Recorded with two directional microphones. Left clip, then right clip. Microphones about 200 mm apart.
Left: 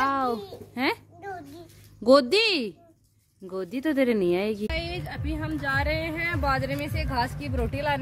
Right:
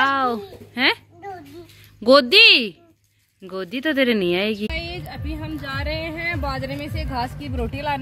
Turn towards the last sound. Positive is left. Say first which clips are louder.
# right 2 dB
turn(degrees=15)  # may be behind; listen again after turning